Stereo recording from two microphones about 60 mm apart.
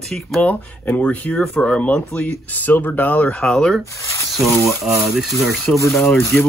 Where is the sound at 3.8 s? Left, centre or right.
Left.